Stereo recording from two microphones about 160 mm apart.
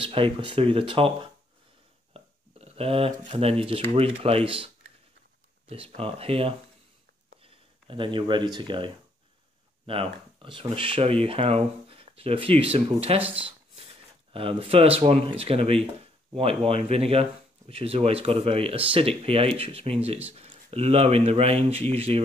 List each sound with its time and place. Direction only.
0.0 s speech: 35° right (ahead or behind)
5.9 s speech: 35° right (ahead or behind)
7.9 s speech: 30° right (ahead or behind)
10.4 s speech: 35° right (ahead or behind)
13.2 s speech: 10° right (ahead or behind)
13.5 s a sound: 35° right (ahead or behind)
14.6 s speech: 35° right (ahead or behind)